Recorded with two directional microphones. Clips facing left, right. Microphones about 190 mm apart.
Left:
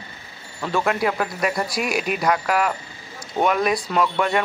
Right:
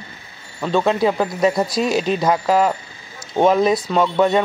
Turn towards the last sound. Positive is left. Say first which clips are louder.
# right 5 dB
turn(degrees=-25)  # may be behind; listen again after turning